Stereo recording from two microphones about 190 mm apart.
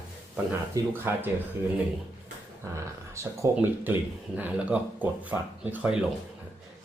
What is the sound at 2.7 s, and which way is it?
Speech, 15° right (ahead or behind).